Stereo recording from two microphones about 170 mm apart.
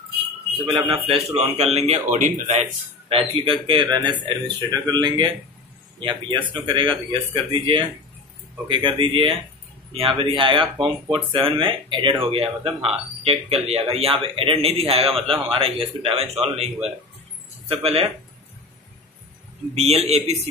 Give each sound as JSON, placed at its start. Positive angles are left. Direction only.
{"t": 0.7, "sound": "speech", "side_deg": -35}
{"t": 3.1, "sound": "speech", "side_deg": -30}
{"t": 19.7, "sound": "speech", "side_deg": -40}